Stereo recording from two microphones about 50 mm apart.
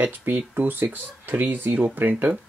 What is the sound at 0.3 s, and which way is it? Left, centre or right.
Speech, right.